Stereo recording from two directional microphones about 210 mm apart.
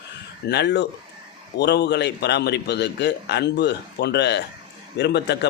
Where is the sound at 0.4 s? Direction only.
55° left (ahead or behind).